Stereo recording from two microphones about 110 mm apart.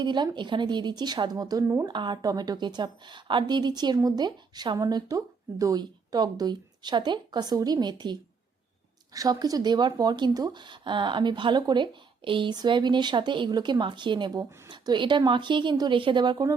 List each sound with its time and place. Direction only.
0.0 s speech: 45° right (ahead or behind)
1.6 s speech: 20° right (ahead or behind)
1.9 s a woman's voice: 45° right (ahead or behind)